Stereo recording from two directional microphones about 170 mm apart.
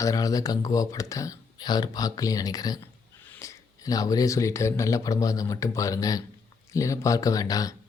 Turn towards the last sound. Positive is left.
turn(degrees=20)  # may be behind; listen again after turning